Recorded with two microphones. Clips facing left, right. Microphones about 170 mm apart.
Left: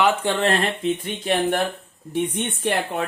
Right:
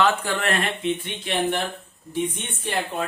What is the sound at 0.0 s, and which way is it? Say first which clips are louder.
Speech: left 2 dB; 25° left (ahead or behind).